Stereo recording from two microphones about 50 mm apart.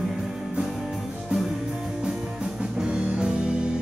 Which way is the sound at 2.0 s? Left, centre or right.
Centre.